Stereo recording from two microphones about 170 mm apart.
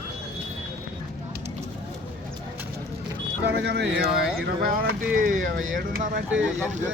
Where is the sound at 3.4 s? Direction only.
85° right; by 5.5 s 55° right (ahead or behind).